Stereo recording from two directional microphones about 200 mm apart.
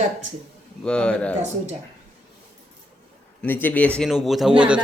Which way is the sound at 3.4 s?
10° left (ahead or behind).